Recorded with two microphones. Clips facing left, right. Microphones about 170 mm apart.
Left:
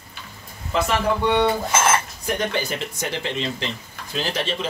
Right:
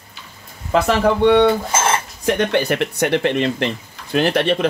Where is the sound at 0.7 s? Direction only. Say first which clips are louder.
Right 6 dB; 70° right (ahead or behind).